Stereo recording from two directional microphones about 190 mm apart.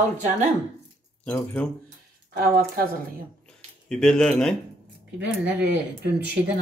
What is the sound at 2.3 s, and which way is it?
Speech, 50° right (ahead or behind).